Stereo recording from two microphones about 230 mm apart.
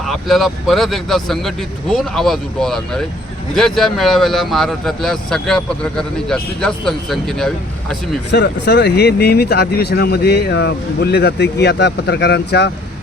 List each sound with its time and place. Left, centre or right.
0.0 s speech: centre
8.3 s speech: left